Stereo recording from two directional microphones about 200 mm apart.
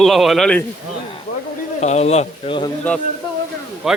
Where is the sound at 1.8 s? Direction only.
35° left (ahead or behind).